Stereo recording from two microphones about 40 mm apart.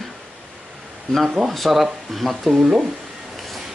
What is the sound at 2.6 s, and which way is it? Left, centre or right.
Speech, centre.